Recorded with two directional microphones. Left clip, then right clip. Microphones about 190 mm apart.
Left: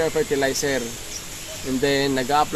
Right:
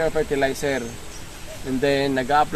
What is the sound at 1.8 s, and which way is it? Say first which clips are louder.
Speech: even; 25° right (ahead or behind).